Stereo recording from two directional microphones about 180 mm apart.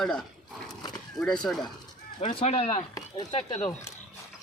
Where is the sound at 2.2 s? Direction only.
30° left (ahead or behind).